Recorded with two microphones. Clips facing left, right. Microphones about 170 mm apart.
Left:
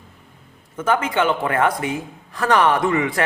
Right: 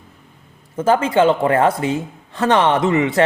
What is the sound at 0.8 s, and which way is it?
A man's voice, 30° right (ahead or behind).